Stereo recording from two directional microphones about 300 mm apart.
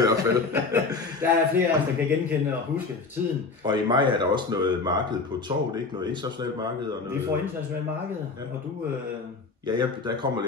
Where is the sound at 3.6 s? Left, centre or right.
Centre.